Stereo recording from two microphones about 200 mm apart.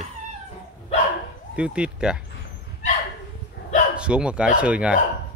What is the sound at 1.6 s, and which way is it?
Speech, 5° right (ahead or behind).